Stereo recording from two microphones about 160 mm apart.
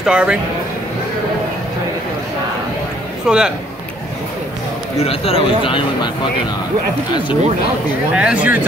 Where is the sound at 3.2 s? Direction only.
5° right (ahead or behind).